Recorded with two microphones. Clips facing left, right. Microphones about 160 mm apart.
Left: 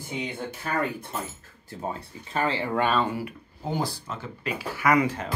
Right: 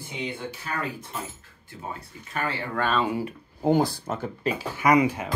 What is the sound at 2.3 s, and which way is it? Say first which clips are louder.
Speech: left 4 dB; 30° left (ahead or behind).